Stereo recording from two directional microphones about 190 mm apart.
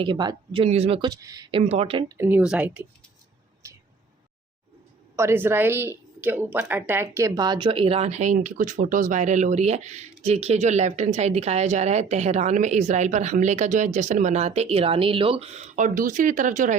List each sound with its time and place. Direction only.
0.0 s speech: 25° right (ahead or behind)
2.1 s speech: 10° right (ahead or behind)
3.6 s a sound: 15° right (ahead or behind)
5.1 s a woman's voice: 15° right (ahead or behind); by 16.7 s 40° right (ahead or behind)